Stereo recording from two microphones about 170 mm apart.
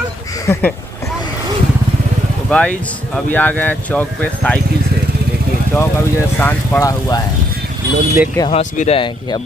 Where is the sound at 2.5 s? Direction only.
5° left (ahead or behind).